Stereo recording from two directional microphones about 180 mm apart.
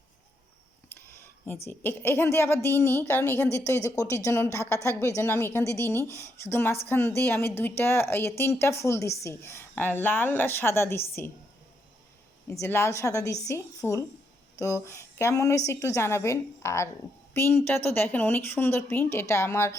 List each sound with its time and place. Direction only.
0.9 s a sound: 15° left (ahead or behind)
1.6 s a woman's voice: 10° left (ahead or behind)
12.5 s a woman's voice: 15° left (ahead or behind)